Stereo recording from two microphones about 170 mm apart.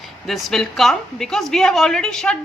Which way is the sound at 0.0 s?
Centre (ahead or behind).